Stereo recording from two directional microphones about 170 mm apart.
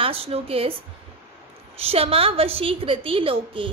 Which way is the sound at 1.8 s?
35° right (ahead or behind).